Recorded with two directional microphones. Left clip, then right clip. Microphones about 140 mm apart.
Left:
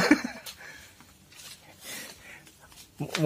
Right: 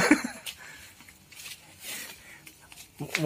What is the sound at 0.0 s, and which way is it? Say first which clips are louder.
Dog: even; 15° left (ahead or behind).